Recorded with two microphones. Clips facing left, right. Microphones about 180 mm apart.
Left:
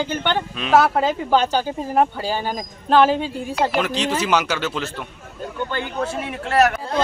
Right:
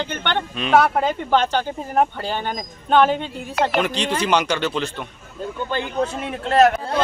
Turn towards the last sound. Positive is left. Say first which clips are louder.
# right 2 dB
turn(degrees=-25)  # may be behind; listen again after turning